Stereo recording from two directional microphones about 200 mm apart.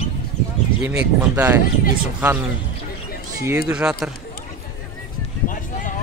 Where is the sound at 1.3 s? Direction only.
10° right (ahead or behind).